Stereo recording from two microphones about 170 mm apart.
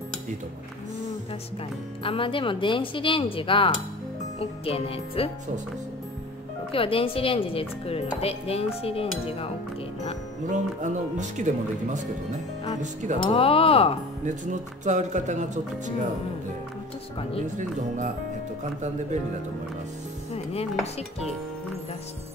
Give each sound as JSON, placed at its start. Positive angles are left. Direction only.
{"t": 2.0, "sound": "speech", "side_deg": 30}
{"t": 6.7, "sound": "speech", "side_deg": 35}
{"t": 10.5, "sound": "speech", "side_deg": -45}
{"t": 13.2, "sound": "speech", "side_deg": 35}
{"t": 14.2, "sound": "speech", "side_deg": -45}
{"t": 17.6, "sound": "speech", "side_deg": -45}